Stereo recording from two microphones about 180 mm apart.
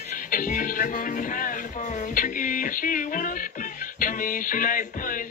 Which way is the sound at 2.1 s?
50° left (ahead or behind).